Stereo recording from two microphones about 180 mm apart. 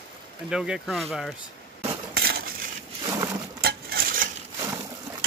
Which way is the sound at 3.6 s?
55° right (ahead or behind).